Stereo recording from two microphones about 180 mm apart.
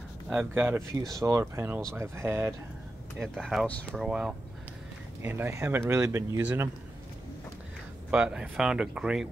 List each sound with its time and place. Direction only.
0.3 s speech: 10° right (ahead or behind)
3.2 s speech: centre (ahead or behind)
8.1 s speech: 5° right (ahead or behind)